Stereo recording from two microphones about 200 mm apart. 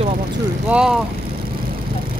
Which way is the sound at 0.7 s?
5° right (ahead or behind).